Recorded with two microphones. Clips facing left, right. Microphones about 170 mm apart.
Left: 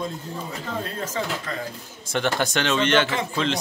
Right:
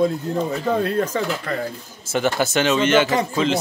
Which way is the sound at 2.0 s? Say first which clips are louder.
Right 3 dB; 5° right (ahead or behind).